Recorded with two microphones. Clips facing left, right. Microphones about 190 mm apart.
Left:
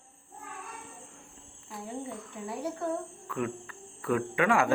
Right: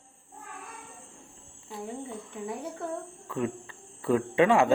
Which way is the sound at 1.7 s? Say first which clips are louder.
Right 1 dB; 25° right (ahead or behind).